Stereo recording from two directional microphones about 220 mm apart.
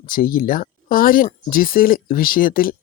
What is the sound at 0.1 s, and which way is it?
Speech, 40° left (ahead or behind).